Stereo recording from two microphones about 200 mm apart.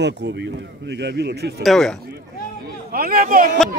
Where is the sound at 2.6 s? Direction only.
50° right (ahead or behind).